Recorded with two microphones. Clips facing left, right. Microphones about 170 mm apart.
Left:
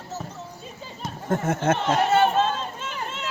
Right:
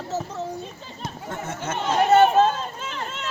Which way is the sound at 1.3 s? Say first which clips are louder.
Left 9 dB; 55° left (ahead or behind).